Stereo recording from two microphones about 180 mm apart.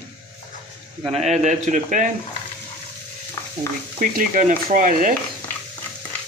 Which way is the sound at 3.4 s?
15° left (ahead or behind).